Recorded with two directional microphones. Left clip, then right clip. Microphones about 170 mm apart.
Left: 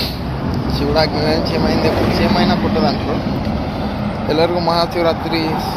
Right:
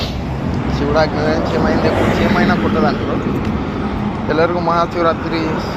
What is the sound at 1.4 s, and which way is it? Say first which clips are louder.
Speech: right 1 dB; 25° right (ahead or behind).